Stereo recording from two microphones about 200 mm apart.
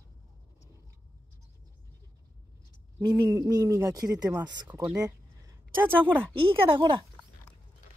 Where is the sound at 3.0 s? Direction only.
20° right (ahead or behind).